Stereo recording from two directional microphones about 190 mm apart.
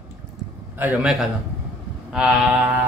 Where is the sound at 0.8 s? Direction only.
5° right (ahead or behind).